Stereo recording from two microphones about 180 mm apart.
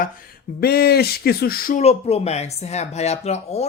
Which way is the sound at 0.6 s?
60° left (ahead or behind).